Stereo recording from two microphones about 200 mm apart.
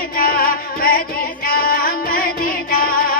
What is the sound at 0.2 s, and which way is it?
Music, 45° left (ahead or behind).